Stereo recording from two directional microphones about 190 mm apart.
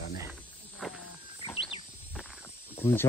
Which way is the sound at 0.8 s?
Centre (ahead or behind).